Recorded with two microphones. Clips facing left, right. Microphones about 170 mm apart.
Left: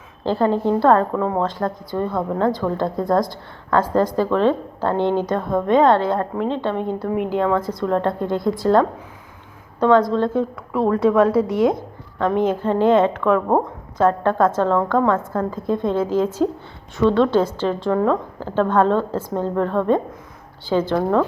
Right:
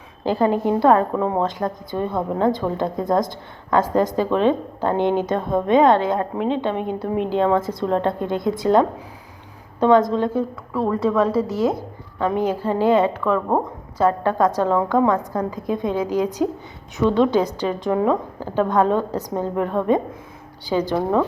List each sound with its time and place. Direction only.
0.3 s a woman's voice: 15° right (ahead or behind)
11.1 s a woman's voice: centre (ahead or behind)